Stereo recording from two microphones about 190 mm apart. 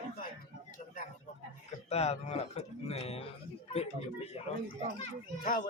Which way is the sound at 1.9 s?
35° left (ahead or behind).